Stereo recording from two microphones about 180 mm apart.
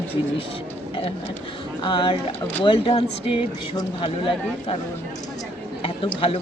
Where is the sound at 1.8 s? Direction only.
25° left (ahead or behind).